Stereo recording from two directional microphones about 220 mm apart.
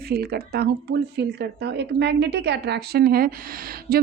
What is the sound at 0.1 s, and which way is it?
A woman's voice, 45° right (ahead or behind).